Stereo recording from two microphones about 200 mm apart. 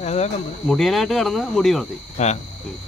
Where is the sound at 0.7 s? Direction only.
Centre (ahead or behind).